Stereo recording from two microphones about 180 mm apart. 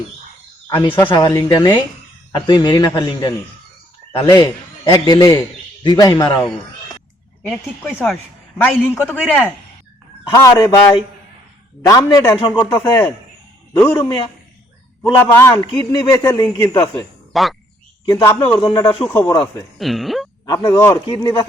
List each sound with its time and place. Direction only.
0.7 s a man's voice: 25° left (ahead or behind)
4.4 s a man's voice: 20° left (ahead or behind)
7.4 s a man's voice: 5° left (ahead or behind)
10.3 s a man's voice: 20° left (ahead or behind)
13.7 s a man's voice: 10° left (ahead or behind)
17.3 s speech: centre (ahead or behind)
18.1 s a man's voice: 15° left (ahead or behind)
18.6 s a man's voice: 25° left (ahead or behind)
19.8 s speech: centre (ahead or behind)
20.5 s a man's voice: 20° left (ahead or behind)